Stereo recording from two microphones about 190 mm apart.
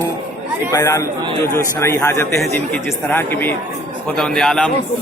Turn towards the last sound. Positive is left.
turn(degrees=5)  # may be behind; listen again after turning